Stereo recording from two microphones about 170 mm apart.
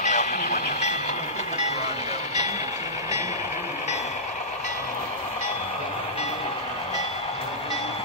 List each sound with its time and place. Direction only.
0.0 s train: 45° left (ahead or behind)